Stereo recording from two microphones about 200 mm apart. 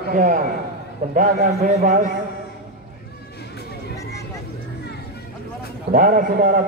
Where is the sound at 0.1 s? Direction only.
40° right (ahead or behind).